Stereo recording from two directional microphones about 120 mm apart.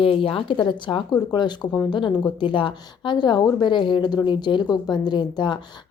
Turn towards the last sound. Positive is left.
turn(degrees=40)  # may be behind; listen again after turning